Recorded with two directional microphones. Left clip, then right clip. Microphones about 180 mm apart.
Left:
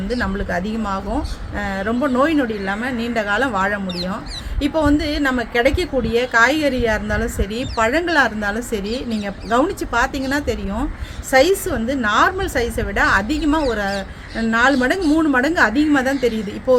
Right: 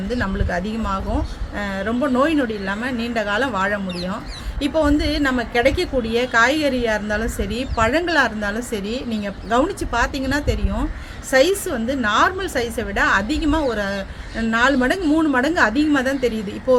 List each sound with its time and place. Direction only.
0.1 s a woman's voice: 10° left (ahead or behind)